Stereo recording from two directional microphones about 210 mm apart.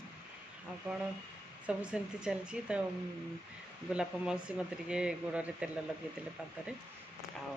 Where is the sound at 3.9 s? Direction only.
5° right (ahead or behind).